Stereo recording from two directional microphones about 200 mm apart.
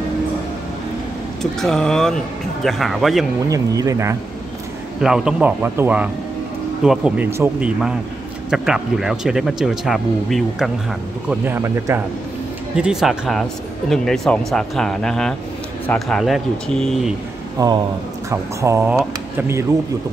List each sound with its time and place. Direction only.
1.4 s speech: centre (ahead or behind)
3.4 s speech: 15° right (ahead or behind)
5.0 s speech: 5° right (ahead or behind)
17.6 s speech: 20° right (ahead or behind)